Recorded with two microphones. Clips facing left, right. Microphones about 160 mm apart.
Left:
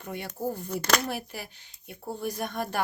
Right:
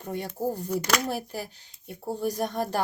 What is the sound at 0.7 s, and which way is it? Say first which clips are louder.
Speech: left 1 dB; 10° right (ahead or behind).